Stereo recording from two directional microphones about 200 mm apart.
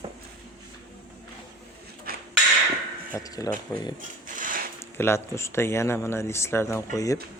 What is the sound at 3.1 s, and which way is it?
Speech, 15° left (ahead or behind).